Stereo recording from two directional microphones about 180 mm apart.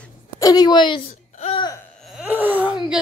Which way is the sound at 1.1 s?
40° left (ahead or behind).